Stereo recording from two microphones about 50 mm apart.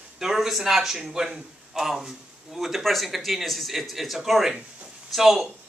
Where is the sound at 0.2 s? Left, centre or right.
Centre.